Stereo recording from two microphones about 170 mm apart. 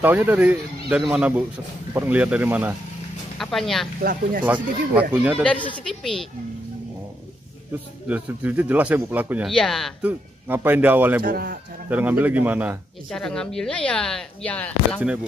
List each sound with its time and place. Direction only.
0.0 s speech: 10° right (ahead or behind)
3.3 s speech: centre (ahead or behind)
4.0 s speech: 55° right (ahead or behind)
5.1 s speech: 5° right (ahead or behind)
5.4 s a woman's voice: 10° left (ahead or behind)
8.1 s speech: 10° right (ahead or behind)
9.5 s speech: centre (ahead or behind)
10.0 s speech: 10° right (ahead or behind)
11.2 s speech: 60° right (ahead or behind)
11.9 s speech: 10° right (ahead or behind)
13.1 s speech: 5° left (ahead or behind)